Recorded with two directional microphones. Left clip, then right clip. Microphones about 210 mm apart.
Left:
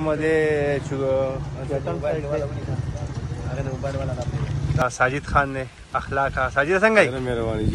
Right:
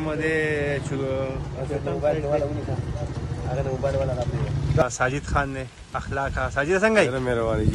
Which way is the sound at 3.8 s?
30° right (ahead or behind).